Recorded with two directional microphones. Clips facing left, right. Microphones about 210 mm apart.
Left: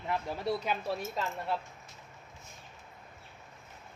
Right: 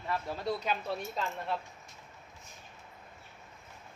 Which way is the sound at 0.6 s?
5° left (ahead or behind).